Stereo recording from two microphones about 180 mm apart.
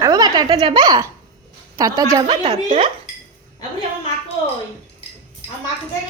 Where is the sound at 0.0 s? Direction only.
20° right (ahead or behind).